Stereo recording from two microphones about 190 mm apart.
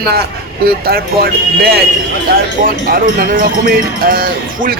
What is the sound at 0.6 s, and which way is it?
Speech, 55° right (ahead or behind).